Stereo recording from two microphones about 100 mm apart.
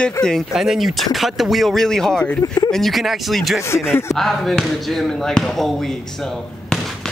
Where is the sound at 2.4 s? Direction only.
40° left (ahead or behind).